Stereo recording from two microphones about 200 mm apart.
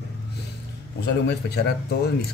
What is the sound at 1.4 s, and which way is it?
Speech, 50° left (ahead or behind).